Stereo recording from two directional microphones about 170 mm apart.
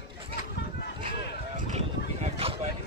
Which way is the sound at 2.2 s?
35° right (ahead or behind).